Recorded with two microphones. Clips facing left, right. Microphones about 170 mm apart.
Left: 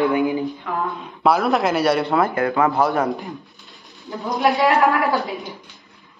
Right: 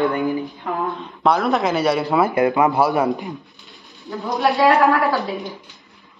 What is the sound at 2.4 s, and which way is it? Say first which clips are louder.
Speech: right 2 dB; 15° right (ahead or behind).